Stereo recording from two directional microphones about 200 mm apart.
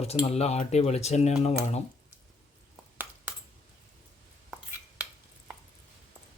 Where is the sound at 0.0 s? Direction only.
30° left (ahead or behind).